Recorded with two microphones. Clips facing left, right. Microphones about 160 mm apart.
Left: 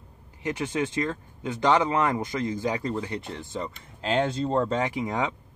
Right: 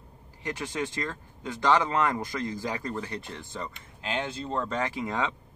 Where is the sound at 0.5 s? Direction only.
20° left (ahead or behind); by 4.7 s 35° left (ahead or behind).